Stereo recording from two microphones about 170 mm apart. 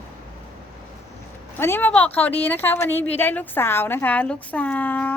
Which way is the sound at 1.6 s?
10° left (ahead or behind).